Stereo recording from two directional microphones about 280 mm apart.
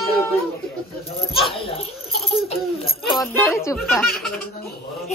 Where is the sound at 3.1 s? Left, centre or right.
Centre.